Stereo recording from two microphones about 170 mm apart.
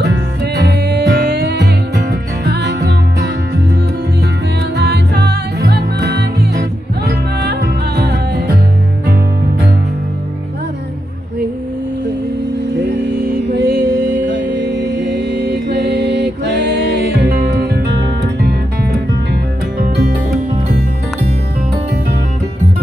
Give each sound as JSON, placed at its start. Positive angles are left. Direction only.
{"t": 0.0, "sound": "music", "side_deg": -70}
{"t": 4.7, "sound": "music", "side_deg": -75}
{"t": 13.5, "sound": "music", "side_deg": -70}
{"t": 14.3, "sound": "music", "side_deg": -85}